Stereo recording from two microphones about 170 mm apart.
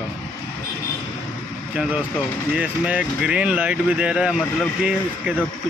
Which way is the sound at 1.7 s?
5° right (ahead or behind).